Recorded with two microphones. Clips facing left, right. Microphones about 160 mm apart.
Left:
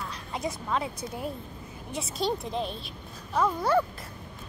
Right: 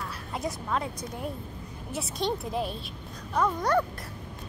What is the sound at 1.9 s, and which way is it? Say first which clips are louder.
A child's voice: left 1 dB; centre (ahead or behind).